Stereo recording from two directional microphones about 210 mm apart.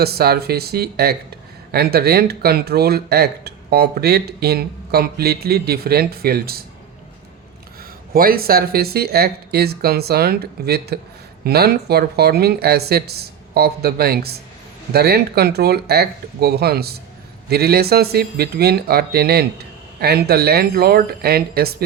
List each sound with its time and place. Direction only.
0.0 s speech: 50° right (ahead or behind)
8.1 s speech: 45° right (ahead or behind)